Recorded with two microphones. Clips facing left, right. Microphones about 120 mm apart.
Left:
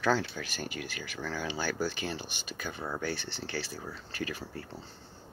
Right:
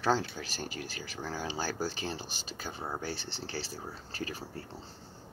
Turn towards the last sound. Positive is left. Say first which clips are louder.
# left 2 dB
turn(degrees=-30)  # may be behind; listen again after turning